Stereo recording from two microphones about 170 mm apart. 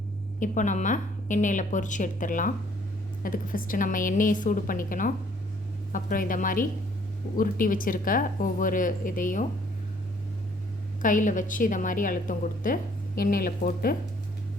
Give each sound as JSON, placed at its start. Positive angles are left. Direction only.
{"t": 0.3, "sound": "a woman's voice", "side_deg": 50}
{"t": 11.0, "sound": "a woman's voice", "side_deg": 50}